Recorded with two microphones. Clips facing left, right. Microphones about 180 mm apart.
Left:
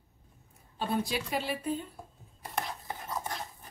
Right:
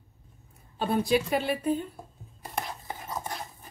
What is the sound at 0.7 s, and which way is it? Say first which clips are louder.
Speech: right 7 dB; 55° right (ahead or behind).